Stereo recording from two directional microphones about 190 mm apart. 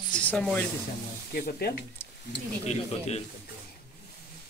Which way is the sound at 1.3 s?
55° left (ahead or behind).